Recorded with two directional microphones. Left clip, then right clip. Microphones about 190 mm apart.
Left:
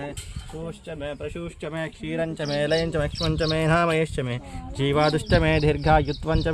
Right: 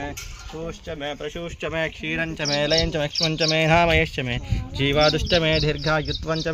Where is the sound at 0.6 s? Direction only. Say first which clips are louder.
Right 3 dB; 20° left (ahead or behind).